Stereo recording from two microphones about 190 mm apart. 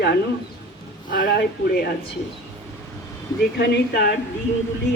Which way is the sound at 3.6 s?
60° left (ahead or behind).